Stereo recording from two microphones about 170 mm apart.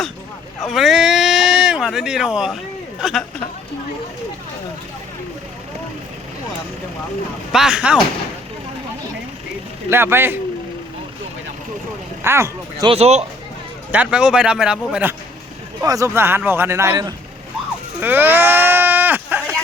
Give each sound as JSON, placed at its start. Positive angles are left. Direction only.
{"t": 0.6, "sound": "a man's voice", "side_deg": 0}
{"t": 7.5, "sound": "a man's voice", "side_deg": -5}
{"t": 9.9, "sound": "speech", "side_deg": -15}
{"t": 12.2, "sound": "speech", "side_deg": -15}
{"t": 12.9, "sound": "speech", "side_deg": -40}
{"t": 13.9, "sound": "a man's voice", "side_deg": -5}
{"t": 15.8, "sound": "speech", "side_deg": -20}
{"t": 18.0, "sound": "sheep", "side_deg": -10}